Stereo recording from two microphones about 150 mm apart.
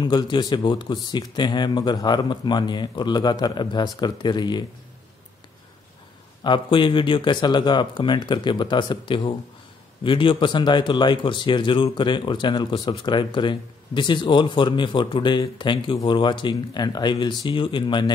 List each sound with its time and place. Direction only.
0.0 s speech: 30° left (ahead or behind)
6.4 s speech: 30° left (ahead or behind)